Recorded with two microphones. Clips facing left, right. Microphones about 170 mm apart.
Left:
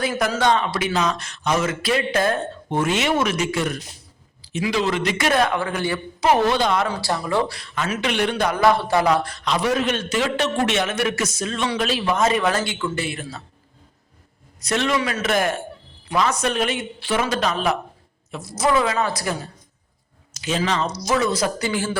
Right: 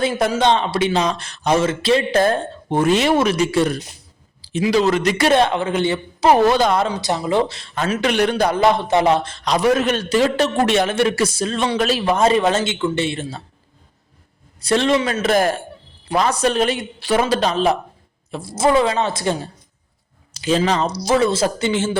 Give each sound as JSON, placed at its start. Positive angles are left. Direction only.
{"t": 0.0, "sound": "speech", "side_deg": -25}
{"t": 6.8, "sound": "speech", "side_deg": -20}
{"t": 7.8, "sound": "speech", "side_deg": -40}
{"t": 8.5, "sound": "speech", "side_deg": -20}
{"t": 9.4, "sound": "speech", "side_deg": -40}
{"t": 12.1, "sound": "speech", "side_deg": -30}
{"t": 14.6, "sound": "speech", "side_deg": -30}